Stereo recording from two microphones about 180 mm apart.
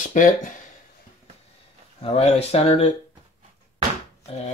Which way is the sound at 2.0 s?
35° left (ahead or behind).